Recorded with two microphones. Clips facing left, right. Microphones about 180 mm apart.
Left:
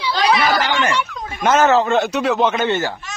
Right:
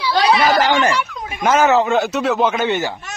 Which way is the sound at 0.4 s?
40° right (ahead or behind).